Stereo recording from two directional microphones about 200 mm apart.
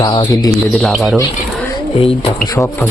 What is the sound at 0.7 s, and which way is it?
Speech, centre (ahead or behind).